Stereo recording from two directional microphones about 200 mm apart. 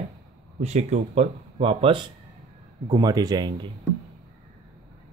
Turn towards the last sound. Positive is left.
turn(degrees=-20)  # may be behind; listen again after turning